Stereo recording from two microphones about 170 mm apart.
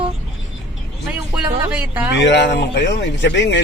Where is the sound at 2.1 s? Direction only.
90° left.